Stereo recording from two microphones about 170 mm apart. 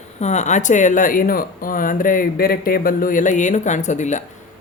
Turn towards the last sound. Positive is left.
turn(degrees=45)  # may be behind; listen again after turning